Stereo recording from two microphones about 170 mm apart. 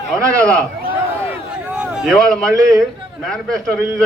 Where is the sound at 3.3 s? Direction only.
5° left (ahead or behind).